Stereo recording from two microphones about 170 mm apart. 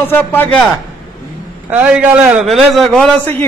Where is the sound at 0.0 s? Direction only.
10° left (ahead or behind).